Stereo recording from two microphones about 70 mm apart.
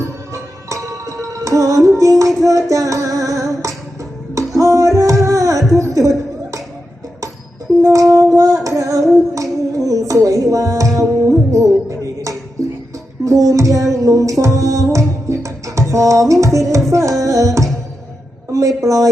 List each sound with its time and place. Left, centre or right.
0.0 s music: right
5.7 s chuckle: right
7.8 s a sound: right
8.6 s female singing: right
9.3 s music: right
18.8 s a sound: right